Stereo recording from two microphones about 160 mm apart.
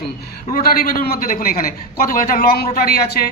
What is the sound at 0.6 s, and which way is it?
A man's voice, 65° left (ahead or behind).